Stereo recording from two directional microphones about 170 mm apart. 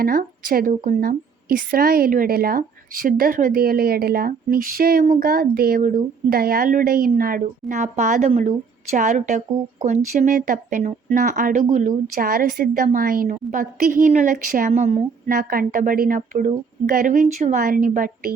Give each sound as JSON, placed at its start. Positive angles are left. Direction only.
{"t": 0.0, "sound": "a woman's voice", "side_deg": -60}
{"t": 7.4, "sound": "speech", "side_deg": -45}
{"t": 13.2, "sound": "a woman's voice", "side_deg": -40}
{"t": 13.6, "sound": "a woman's voice", "side_deg": -55}
{"t": 14.7, "sound": "a woman's voice", "side_deg": -40}
{"t": 15.3, "sound": "a woman's voice", "side_deg": -60}